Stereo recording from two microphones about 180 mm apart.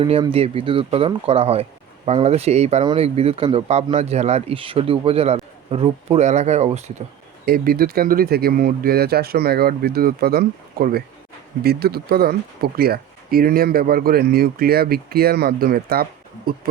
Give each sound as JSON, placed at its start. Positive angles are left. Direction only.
{"t": 0.0, "sound": "a man's voice", "side_deg": -30}
{"t": 7.4, "sound": "speech", "side_deg": -55}